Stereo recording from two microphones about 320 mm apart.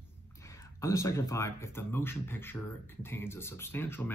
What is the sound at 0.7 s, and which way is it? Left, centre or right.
Speech, centre.